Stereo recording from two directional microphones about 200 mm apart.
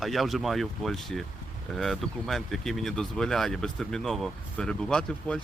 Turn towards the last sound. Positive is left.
turn(degrees=5)  # may be behind; listen again after turning